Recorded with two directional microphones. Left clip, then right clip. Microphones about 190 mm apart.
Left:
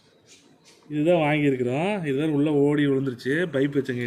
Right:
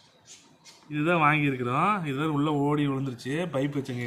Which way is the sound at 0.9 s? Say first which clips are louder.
Left 2 dB; 90° left.